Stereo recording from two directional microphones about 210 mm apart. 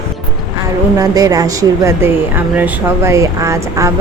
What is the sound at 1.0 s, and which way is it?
Speech, 15° right (ahead or behind).